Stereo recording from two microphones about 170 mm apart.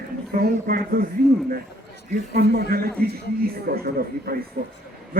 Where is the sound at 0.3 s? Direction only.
65° right (ahead or behind).